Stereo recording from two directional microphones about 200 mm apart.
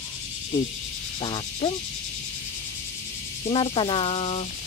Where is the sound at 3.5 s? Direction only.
25° left (ahead or behind).